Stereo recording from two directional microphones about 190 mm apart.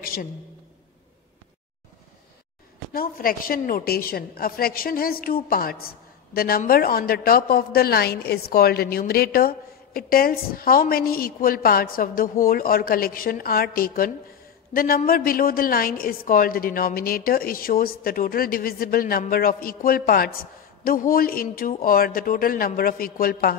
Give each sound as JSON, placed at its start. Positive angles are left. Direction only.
{"t": 0.0, "sound": "a woman's voice", "side_deg": 50}
{"t": 2.9, "sound": "a woman's voice", "side_deg": 50}